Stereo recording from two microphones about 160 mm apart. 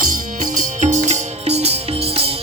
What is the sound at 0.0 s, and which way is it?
Music, 55° right (ahead or behind).